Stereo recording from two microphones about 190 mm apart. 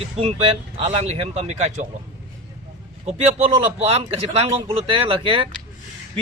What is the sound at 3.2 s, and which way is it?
Speech, 30° right (ahead or behind).